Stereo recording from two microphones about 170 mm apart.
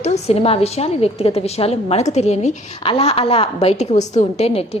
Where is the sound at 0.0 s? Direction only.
40° left (ahead or behind).